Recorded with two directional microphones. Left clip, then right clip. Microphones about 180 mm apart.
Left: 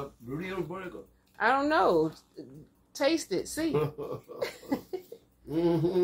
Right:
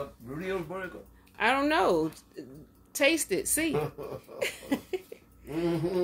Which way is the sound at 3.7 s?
10° right (ahead or behind).